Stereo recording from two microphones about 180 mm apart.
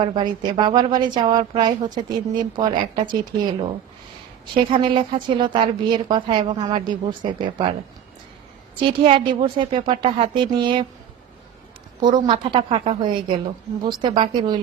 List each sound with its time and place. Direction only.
0.0 s a woman's voice: 25° right (ahead or behind)
4.5 s a woman's voice: 30° right (ahead or behind)
8.8 s a woman's voice: 30° right (ahead or behind)
12.0 s a woman's voice: 25° right (ahead or behind)